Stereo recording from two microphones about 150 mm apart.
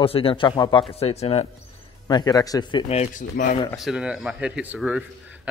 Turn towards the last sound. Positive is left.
turn(degrees=-5)  # may be behind; listen again after turning